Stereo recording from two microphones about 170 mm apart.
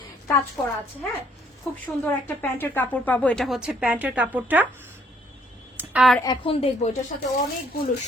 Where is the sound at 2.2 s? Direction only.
10° left (ahead or behind); by 4.6 s 10° right (ahead or behind).